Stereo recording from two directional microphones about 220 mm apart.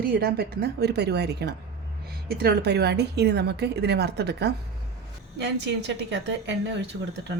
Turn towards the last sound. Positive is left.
turn(degrees=-50)  # may be behind; listen again after turning